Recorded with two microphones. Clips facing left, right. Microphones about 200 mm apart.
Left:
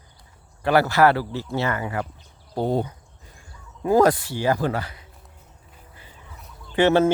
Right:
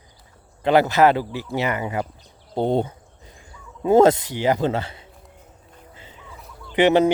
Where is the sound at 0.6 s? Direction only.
20° right (ahead or behind).